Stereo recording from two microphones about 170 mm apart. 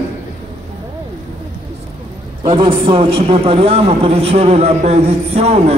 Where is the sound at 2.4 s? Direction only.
30° right (ahead or behind).